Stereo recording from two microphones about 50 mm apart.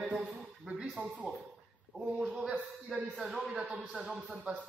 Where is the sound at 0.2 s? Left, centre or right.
Right.